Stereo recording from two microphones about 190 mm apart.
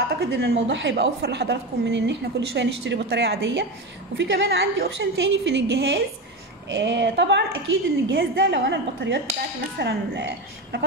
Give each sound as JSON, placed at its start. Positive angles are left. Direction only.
{"t": 0.2, "sound": "a woman's voice", "side_deg": -60}